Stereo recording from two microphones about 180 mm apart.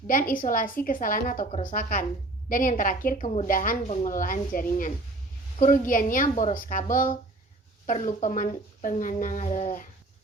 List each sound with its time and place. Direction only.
0.1 s a woman's voice: 50° left (ahead or behind)